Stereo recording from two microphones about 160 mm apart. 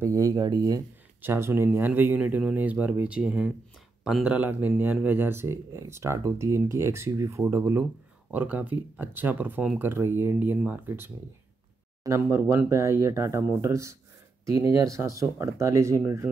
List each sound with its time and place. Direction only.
0.0 s speech: 20° right (ahead or behind)